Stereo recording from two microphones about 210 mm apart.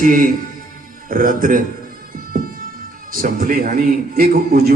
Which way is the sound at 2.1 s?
45° right (ahead or behind).